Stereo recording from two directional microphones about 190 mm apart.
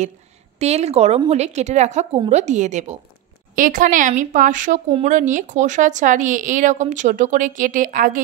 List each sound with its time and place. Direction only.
0.6 s a woman's voice: 35° right (ahead or behind)